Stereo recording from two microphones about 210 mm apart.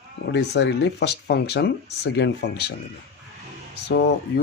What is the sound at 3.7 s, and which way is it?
Speech, 50° left (ahead or behind).